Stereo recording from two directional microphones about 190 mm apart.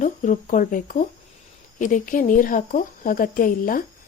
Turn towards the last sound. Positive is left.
turn(degrees=45)  # may be behind; listen again after turning